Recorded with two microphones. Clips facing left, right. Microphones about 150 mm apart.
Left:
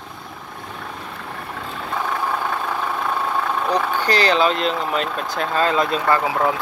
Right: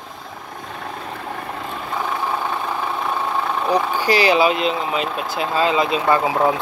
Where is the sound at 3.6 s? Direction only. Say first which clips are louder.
Right 4 dB; 10° right (ahead or behind).